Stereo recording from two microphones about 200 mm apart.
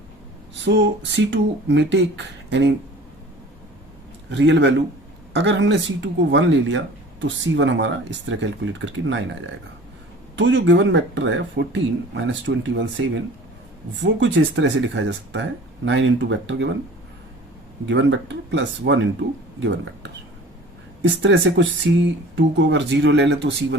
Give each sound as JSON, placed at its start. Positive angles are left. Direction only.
{"t": 0.6, "sound": "speech", "side_deg": -60}
{"t": 4.3, "sound": "speech", "side_deg": -65}
{"t": 14.0, "sound": "speech", "side_deg": -65}
{"t": 17.8, "sound": "speech", "side_deg": -65}